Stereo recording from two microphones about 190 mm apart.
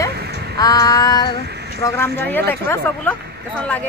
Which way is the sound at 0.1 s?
60° right (ahead or behind).